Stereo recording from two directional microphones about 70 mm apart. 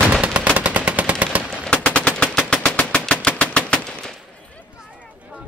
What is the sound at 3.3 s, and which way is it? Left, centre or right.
Machine gun, centre.